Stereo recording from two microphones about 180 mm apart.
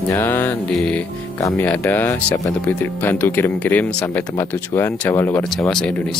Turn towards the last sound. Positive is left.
turn(degrees=5)  # may be behind; listen again after turning